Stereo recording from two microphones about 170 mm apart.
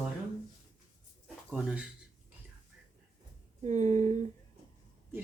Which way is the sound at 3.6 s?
45° right (ahead or behind).